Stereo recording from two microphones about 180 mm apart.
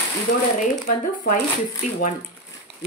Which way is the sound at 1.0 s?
50° left (ahead or behind).